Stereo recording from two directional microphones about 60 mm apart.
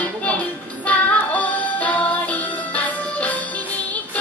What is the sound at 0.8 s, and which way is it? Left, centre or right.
Music, left.